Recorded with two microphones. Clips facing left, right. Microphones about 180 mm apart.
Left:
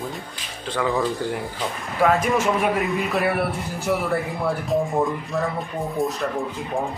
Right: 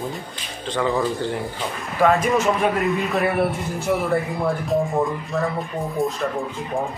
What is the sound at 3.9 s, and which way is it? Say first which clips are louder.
Speech: right 2 dB; centre (ahead or behind).